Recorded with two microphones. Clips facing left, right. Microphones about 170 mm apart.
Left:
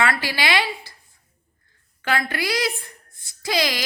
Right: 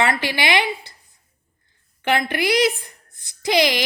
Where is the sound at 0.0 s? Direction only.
20° right (ahead or behind).